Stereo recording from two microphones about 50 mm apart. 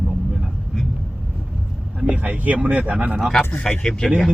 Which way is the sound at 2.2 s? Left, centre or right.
Right.